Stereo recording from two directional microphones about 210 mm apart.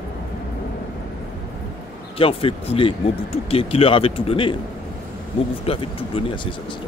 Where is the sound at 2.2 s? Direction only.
25° left (ahead or behind).